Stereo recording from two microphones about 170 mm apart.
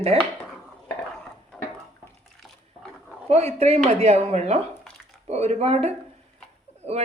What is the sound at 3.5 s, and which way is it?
A man's voice, 40° right (ahead or behind).